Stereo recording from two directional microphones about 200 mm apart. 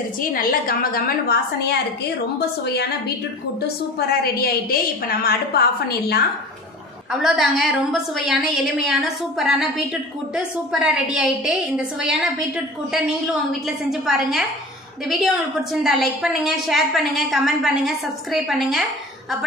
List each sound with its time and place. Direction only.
0.2 s a woman's voice: 45° left (ahead or behind)
7.1 s a woman's voice: 5° right (ahead or behind)